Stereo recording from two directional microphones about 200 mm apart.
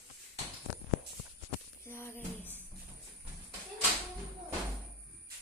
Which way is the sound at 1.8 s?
15° left (ahead or behind).